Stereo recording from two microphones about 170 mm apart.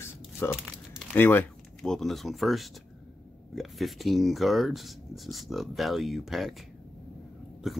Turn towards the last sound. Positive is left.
turn(degrees=0)  # may be behind; listen again after turning